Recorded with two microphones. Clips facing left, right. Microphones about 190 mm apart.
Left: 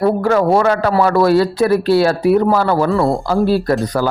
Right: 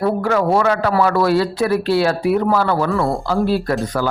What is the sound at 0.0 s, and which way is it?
A man's voice, 40° left (ahead or behind).